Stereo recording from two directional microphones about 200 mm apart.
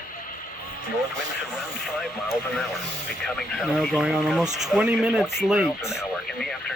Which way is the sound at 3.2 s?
Centre (ahead or behind).